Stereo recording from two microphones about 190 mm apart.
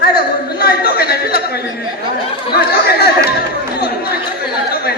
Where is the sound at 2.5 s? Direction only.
55° left (ahead or behind).